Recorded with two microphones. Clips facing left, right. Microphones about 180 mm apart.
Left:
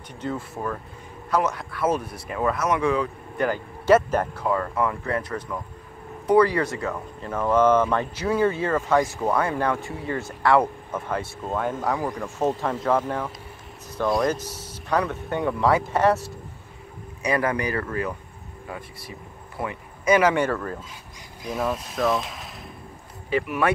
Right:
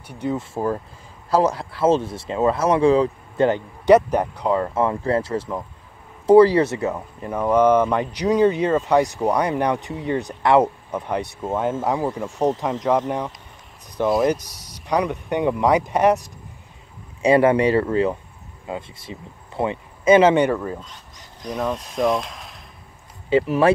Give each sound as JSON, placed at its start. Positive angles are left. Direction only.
{"t": 0.1, "sound": "speech", "side_deg": -15}
{"t": 0.4, "sound": "speech", "side_deg": -30}
{"t": 14.2, "sound": "speech", "side_deg": -15}
{"t": 20.9, "sound": "speech", "side_deg": 5}
{"t": 23.3, "sound": "speech", "side_deg": -30}